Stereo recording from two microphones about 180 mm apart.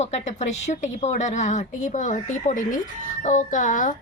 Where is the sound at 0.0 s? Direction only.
40° left (ahead or behind).